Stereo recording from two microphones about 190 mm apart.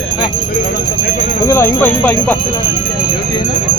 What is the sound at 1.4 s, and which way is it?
Speech, 15° left (ahead or behind).